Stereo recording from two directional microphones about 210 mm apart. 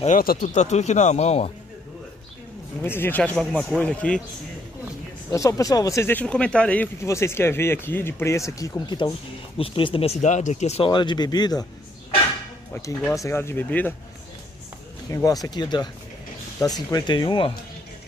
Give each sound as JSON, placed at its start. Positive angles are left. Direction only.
{"t": 0.0, "sound": "speech", "side_deg": 40}
{"t": 2.8, "sound": "a man's voice", "side_deg": 10}
{"t": 5.3, "sound": "speech", "side_deg": 15}
{"t": 12.7, "sound": "speech", "side_deg": 10}
{"t": 15.0, "sound": "speech", "side_deg": 15}